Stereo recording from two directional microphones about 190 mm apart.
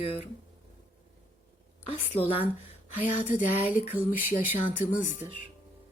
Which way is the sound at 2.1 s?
30° left (ahead or behind).